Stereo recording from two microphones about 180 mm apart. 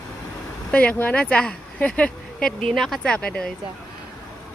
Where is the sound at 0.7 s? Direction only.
5° left (ahead or behind).